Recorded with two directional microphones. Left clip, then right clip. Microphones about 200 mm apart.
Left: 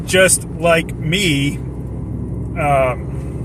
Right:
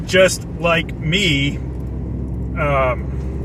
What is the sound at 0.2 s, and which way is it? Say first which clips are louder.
Speech: even; 25° left (ahead or behind).